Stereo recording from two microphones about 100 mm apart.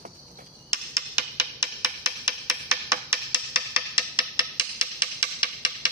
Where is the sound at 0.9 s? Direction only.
25° right (ahead or behind).